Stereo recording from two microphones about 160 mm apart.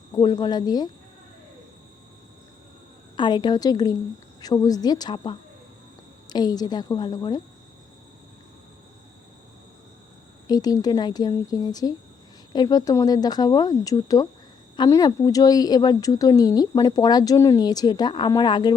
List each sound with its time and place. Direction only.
0.1 s speech: 25° left (ahead or behind)
3.2 s speech: 30° left (ahead or behind)
10.4 s speech: 25° left (ahead or behind)